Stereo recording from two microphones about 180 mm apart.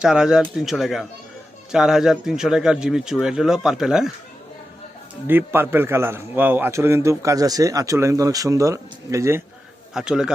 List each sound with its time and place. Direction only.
0.0 s a man's voice: 5° right (ahead or behind)
5.3 s a man's voice: 10° right (ahead or behind)
9.9 s a man's voice: 5° right (ahead or behind)